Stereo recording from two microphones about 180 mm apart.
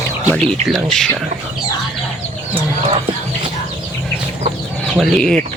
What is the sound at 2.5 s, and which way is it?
Speech, 30° right (ahead or behind).